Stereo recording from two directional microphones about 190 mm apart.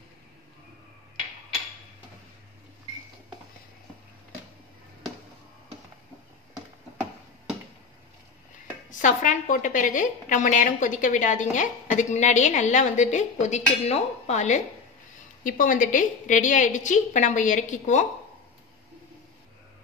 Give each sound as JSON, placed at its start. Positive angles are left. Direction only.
{"t": 9.0, "sound": "a woman's voice", "side_deg": 40}